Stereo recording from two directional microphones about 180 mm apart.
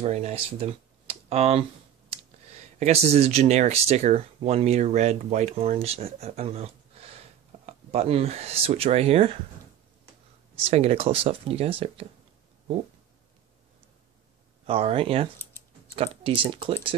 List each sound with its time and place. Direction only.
0.0 s speech: 35° right (ahead or behind)
2.8 s speech: 35° right (ahead or behind)
10.6 s speech: 35° right (ahead or behind)
14.7 s speech: 30° right (ahead or behind)
16.4 s speech: 30° right (ahead or behind)